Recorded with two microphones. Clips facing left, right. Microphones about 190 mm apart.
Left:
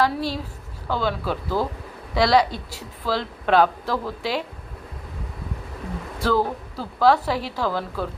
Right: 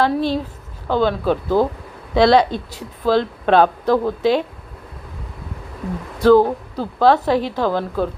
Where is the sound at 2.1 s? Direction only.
25° right (ahead or behind).